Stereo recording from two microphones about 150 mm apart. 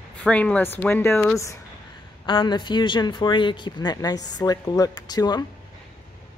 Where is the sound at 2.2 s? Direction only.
35° left (ahead or behind).